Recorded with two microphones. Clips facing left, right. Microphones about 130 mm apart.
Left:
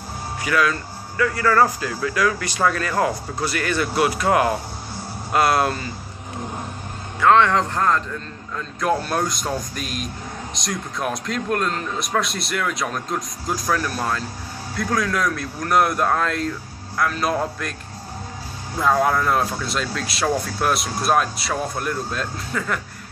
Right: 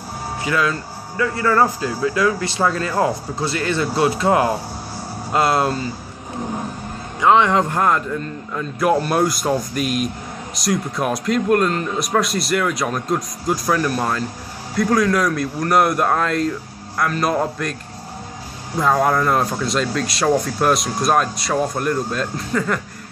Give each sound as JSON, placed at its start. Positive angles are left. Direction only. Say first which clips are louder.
{"t": 0.4, "sound": "a man's voice", "louder": "even", "side_deg": -25}
{"t": 7.2, "sound": "a man's voice", "louder": "right 1 dB", "side_deg": -15}
{"t": 18.8, "sound": "a man's voice", "louder": "right 2 dB", "side_deg": -5}